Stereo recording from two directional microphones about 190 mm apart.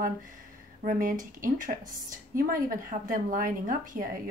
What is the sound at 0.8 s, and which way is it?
Speech, 45° right (ahead or behind).